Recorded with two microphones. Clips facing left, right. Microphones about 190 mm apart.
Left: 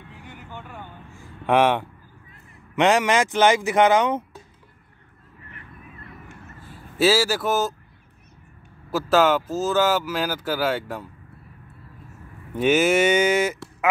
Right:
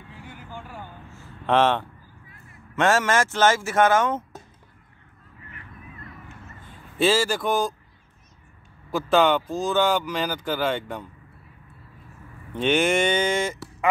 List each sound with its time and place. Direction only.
0.5 s vehicle: 10° right (ahead or behind)
1.1 s a sound: 15° left (ahead or behind)
2.7 s speech: 15° left (ahead or behind)
6.6 s speech: 5° left (ahead or behind)
8.9 s speech: 5° left (ahead or behind)
12.5 s speech: 5° left (ahead or behind)